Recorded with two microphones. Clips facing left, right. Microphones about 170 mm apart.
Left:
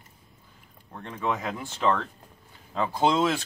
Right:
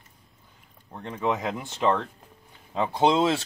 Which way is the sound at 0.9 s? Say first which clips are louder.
Right 2 dB; 20° right (ahead or behind).